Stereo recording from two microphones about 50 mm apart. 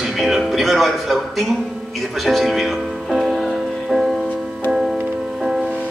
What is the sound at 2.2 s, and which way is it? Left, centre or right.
Music, centre.